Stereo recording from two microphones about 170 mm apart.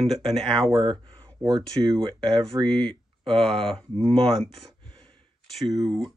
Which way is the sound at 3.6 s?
5° left (ahead or behind).